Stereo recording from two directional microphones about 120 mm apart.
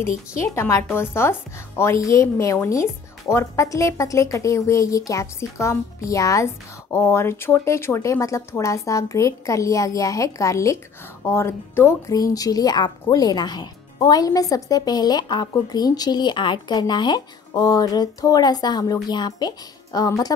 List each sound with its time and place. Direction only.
0.6 s a woman's voice: 20° left (ahead or behind)